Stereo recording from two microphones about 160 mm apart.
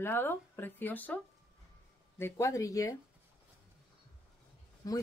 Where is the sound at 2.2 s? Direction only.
15° left (ahead or behind).